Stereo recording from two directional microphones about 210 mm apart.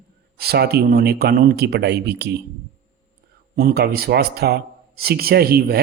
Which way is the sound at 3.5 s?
45° right (ahead or behind).